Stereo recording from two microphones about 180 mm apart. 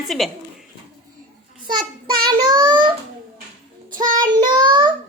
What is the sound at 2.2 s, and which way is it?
Child singing, 25° right (ahead or behind).